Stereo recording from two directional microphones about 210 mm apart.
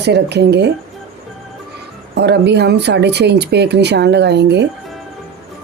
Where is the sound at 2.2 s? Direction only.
50° right (ahead or behind).